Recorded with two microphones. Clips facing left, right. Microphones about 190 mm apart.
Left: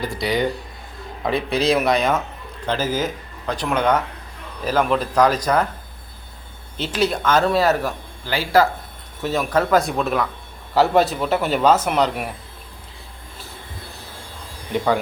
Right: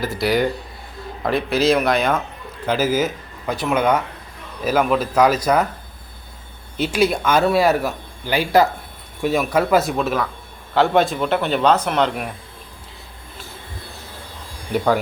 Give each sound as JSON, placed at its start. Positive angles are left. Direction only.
{"t": 0.0, "sound": "a man's voice", "side_deg": 0}
{"t": 6.7, "sound": "a man's voice", "side_deg": -10}